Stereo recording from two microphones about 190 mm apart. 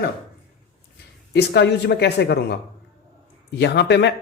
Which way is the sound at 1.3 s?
60° left (ahead or behind).